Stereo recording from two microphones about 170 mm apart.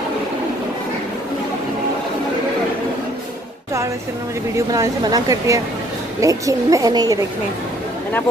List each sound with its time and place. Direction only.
4.6 s speech: 20° right (ahead or behind)